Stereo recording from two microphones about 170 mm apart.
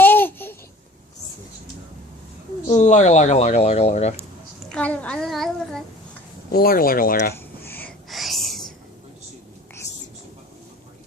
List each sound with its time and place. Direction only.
0.0 s babbling: 10° left (ahead or behind)
2.7 s speech: 45° left (ahead or behind)
4.7 s a child's voice: 10° left (ahead or behind)
6.5 s speech: 60° left (ahead or behind)
7.3 s a sound: 10° left (ahead or behind)
8.1 s whispering: centre (ahead or behind)